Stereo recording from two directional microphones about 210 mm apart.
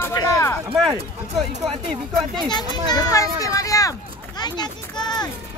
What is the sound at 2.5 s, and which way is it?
A child's voice, 20° left (ahead or behind).